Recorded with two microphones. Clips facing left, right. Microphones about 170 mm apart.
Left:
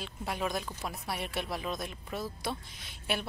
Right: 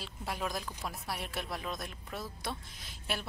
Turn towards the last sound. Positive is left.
turn(degrees=0)  # may be behind; listen again after turning